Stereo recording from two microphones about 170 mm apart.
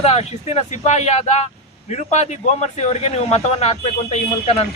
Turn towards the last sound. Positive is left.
turn(degrees=40)  # may be behind; listen again after turning